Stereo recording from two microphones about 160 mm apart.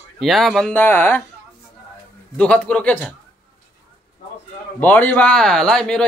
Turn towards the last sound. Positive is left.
turn(degrees=5)  # may be behind; listen again after turning